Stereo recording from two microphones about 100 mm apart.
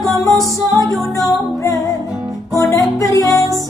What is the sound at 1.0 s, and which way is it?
Music, 35° left (ahead or behind).